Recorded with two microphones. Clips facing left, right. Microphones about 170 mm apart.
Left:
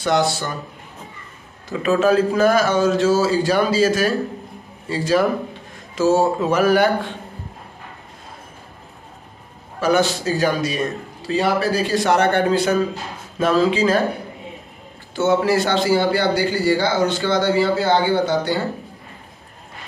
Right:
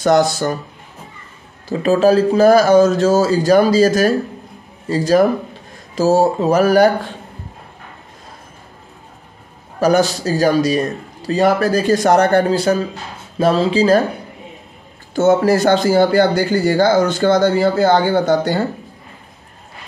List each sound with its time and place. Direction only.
0.0 s a man's voice: 40° right (ahead or behind)
1.7 s a man's voice: 35° right (ahead or behind)
9.8 s a man's voice: 40° right (ahead or behind)
15.1 s speech: 45° right (ahead or behind)